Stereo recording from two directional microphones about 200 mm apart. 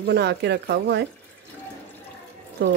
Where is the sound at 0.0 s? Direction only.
55° right (ahead or behind).